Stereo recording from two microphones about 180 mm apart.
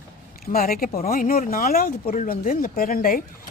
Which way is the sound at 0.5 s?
55° left (ahead or behind).